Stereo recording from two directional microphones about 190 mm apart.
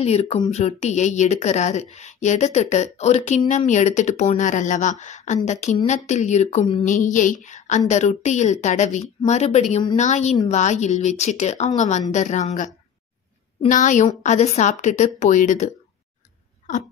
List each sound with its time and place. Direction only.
0.0 s speech: 35° left (ahead or behind)